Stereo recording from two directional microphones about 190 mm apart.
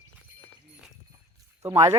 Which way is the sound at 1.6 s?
15° right (ahead or behind).